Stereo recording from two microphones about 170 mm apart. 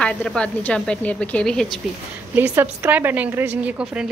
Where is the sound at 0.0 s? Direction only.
5° left (ahead or behind).